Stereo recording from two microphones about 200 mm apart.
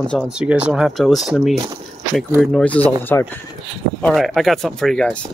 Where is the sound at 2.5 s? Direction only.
5° left (ahead or behind).